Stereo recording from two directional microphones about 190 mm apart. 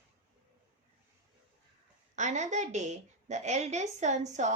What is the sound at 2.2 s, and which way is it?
A woman's voice, 40° right (ahead or behind).